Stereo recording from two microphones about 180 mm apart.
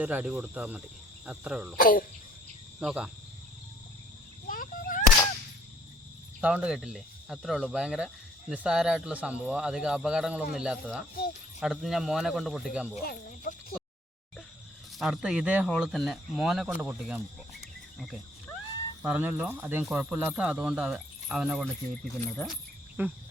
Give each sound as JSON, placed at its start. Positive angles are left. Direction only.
{"t": 0.0, "sound": "speech", "side_deg": -10}
{"t": 1.8, "sound": "speech", "side_deg": 50}
{"t": 2.8, "sound": "speech", "side_deg": -5}
{"t": 4.4, "sound": "a sound", "side_deg": 50}
{"t": 6.4, "sound": "speech", "side_deg": -5}
{"t": 13.0, "sound": "speech", "side_deg": 55}
{"t": 14.9, "sound": "speech", "side_deg": 0}
{"t": 19.0, "sound": "speech", "side_deg": -10}